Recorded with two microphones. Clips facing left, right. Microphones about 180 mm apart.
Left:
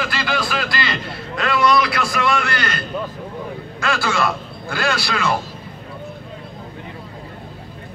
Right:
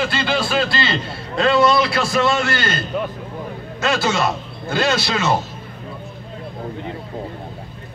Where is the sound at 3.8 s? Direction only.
25° right (ahead or behind).